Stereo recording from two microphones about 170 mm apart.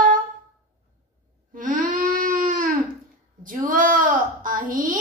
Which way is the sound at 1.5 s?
50° right (ahead or behind).